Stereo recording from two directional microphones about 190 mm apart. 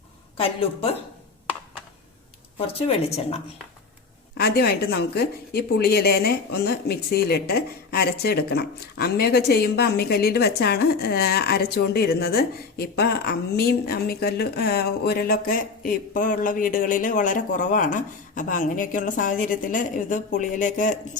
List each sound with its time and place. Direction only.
0.3 s a woman's voice: 30° left (ahead or behind)
2.6 s a woman's voice: 30° left (ahead or behind)
4.4 s a woman's voice: 55° left (ahead or behind)